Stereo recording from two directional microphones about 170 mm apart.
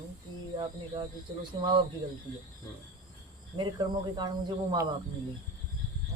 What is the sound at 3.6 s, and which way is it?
Speech, 25° right (ahead or behind).